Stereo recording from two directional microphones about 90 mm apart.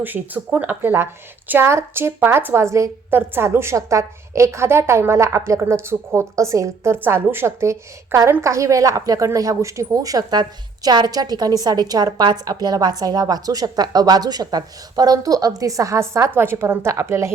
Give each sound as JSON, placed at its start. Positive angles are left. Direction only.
{"t": 0.0, "sound": "a woman's voice", "side_deg": -20}